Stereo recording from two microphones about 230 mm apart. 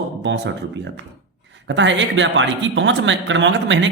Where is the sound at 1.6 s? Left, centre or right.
Right.